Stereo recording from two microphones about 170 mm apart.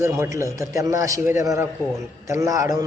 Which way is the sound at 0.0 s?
20° right (ahead or behind).